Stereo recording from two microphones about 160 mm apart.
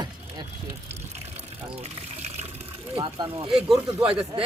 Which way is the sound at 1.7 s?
40° right (ahead or behind).